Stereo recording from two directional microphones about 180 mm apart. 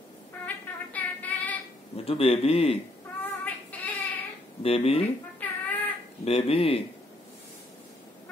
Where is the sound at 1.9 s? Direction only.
30° left (ahead or behind).